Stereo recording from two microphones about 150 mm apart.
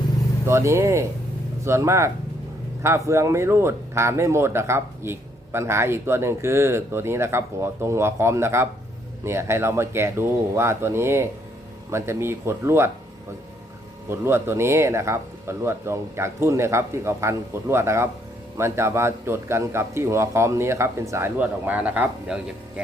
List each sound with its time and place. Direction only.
0.4 s speech: 15° right (ahead or behind)
14.1 s speech: 15° right (ahead or behind)